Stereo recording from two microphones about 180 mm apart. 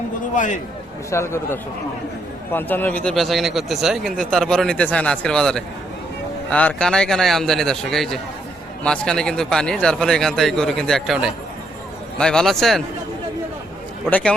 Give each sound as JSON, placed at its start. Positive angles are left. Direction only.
{"t": 0.3, "sound": "a man's voice", "side_deg": 45}
{"t": 1.1, "sound": "speech", "side_deg": 15}
{"t": 14.1, "sound": "speech", "side_deg": 5}